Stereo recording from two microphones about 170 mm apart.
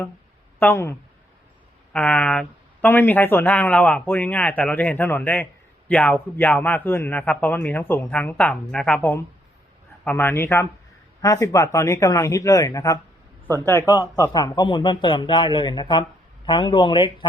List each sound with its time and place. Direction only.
0.6 s speech: 15° left (ahead or behind)